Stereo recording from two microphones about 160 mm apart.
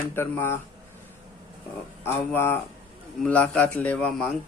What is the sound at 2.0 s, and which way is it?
Speech, 15° left (ahead or behind).